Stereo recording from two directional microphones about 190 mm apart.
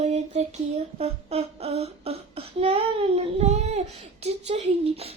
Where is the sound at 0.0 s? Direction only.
35° right (ahead or behind).